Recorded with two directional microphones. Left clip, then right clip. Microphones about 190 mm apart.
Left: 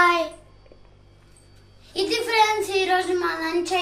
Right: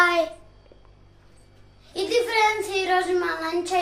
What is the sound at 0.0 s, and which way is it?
Child singing, 15° right (ahead or behind).